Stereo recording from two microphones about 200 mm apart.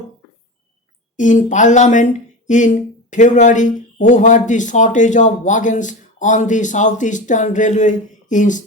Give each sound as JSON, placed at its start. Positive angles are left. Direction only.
{"t": 1.1, "sound": "speech", "side_deg": 40}